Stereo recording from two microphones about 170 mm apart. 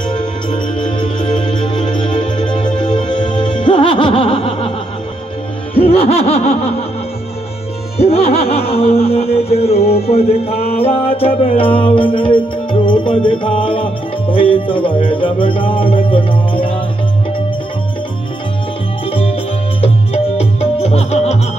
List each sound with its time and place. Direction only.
1.4 s music: 25° left (ahead or behind)
4.5 s music: 40° left (ahead or behind)
5.8 s laughter: 35° left (ahead or behind)
8.0 s music: 35° left (ahead or behind)
19.0 s music: 35° left (ahead or behind)